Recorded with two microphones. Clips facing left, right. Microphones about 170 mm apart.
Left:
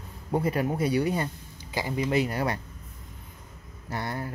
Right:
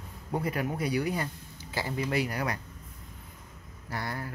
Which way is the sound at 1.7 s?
15° left (ahead or behind).